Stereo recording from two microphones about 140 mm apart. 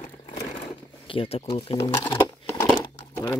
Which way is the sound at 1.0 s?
40° left (ahead or behind).